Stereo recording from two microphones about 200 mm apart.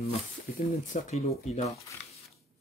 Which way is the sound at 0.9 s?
35° left (ahead or behind).